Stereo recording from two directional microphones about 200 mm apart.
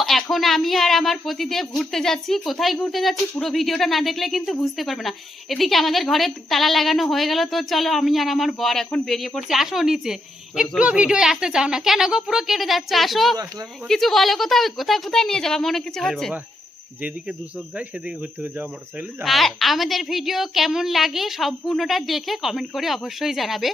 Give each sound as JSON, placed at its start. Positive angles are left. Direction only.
{"t": 0.0, "sound": "a woman's voice", "side_deg": 0}
{"t": 13.3, "sound": "speech", "side_deg": -20}
{"t": 13.8, "sound": "a woman's voice", "side_deg": 0}
{"t": 17.7, "sound": "speech", "side_deg": -5}
{"t": 19.2, "sound": "a woman's voice", "side_deg": 0}